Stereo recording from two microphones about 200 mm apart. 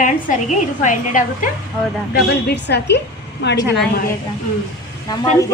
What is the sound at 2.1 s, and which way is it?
A woman's voice, 55° left (ahead or behind).